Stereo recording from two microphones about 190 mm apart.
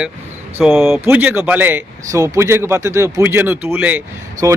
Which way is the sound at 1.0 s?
10° right (ahead or behind).